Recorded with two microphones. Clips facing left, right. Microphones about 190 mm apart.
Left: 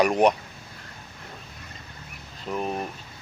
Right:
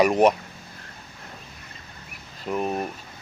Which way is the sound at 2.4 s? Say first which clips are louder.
Right 3 dB; 5° right (ahead or behind).